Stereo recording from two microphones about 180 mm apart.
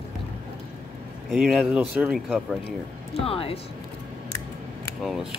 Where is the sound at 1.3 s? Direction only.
5° right (ahead or behind).